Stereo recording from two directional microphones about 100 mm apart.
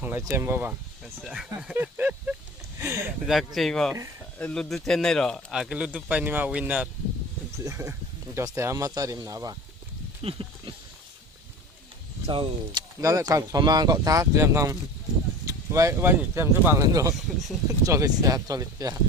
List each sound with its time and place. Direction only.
0.0 s speech: 20° right (ahead or behind)
1.2 s a man's voice: 5° right (ahead or behind)
1.7 s a sound: 20° right (ahead or behind)
2.8 s speech: 30° right (ahead or behind)
3.2 s a man's voice: centre (ahead or behind)
4.4 s speech: 15° left (ahead or behind)
4.7 s speech: 5° left (ahead or behind)
7.6 s speech: 30° right (ahead or behind)
10.2 s speech: 65° right (ahead or behind)
12.3 s speech: 60° right (ahead or behind)
13.0 s speech: 35° right (ahead or behind)